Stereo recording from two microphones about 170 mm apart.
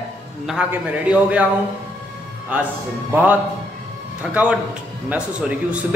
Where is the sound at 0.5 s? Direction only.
5° right (ahead or behind).